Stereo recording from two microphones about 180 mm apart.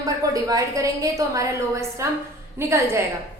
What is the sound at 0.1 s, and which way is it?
A woman's voice, 20° right (ahead or behind).